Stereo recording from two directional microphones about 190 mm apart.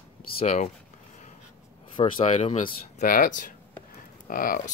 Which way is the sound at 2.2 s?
35° left (ahead or behind).